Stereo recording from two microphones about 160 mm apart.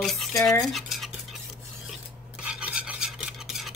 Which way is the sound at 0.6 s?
Centre (ahead or behind).